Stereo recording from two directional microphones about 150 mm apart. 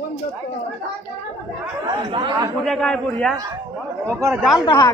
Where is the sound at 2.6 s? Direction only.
Centre (ahead or behind).